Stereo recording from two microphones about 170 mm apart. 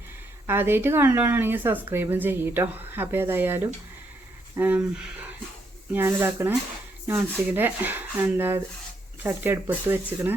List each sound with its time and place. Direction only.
0.4 s a woman's voice: 15° right (ahead or behind)